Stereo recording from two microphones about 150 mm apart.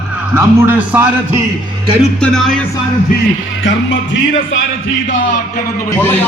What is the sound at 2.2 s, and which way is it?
Speech, 5° left (ahead or behind).